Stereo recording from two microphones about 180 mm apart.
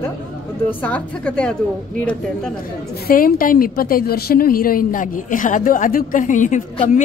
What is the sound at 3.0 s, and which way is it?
A woman's voice, 50° left (ahead or behind).